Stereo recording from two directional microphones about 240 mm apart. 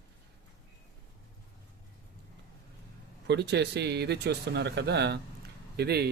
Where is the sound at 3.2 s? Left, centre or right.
Right.